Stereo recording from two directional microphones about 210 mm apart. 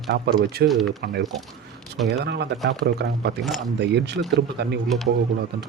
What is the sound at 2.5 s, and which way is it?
Speech, centre (ahead or behind).